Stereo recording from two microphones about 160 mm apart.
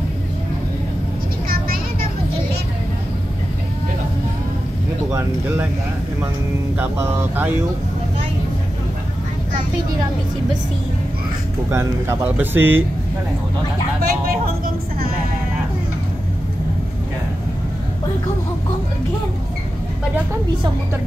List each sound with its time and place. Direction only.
1.5 s vehicle: 65° right (ahead or behind)
6.8 s speech: 15° right (ahead or behind)
11.7 s speech: 15° right (ahead or behind)
14.0 s speech: 65° right (ahead or behind)